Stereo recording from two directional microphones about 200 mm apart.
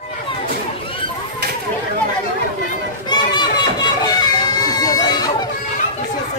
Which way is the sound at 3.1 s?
20° left (ahead or behind).